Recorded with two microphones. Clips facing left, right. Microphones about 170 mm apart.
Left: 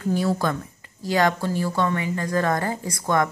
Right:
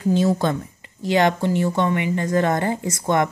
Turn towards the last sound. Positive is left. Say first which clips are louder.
# right 2 dB
turn(degrees=-20)  # may be behind; listen again after turning